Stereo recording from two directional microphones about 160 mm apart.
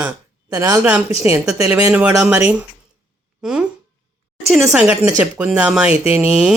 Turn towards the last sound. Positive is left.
turn(degrees=-5)  # may be behind; listen again after turning